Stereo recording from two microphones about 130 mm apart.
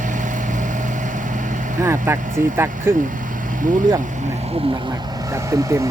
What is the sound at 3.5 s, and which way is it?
Vehicle, 90° right.